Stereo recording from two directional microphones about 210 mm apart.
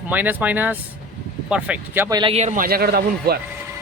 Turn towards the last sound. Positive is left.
turn(degrees=-45)  # may be behind; listen again after turning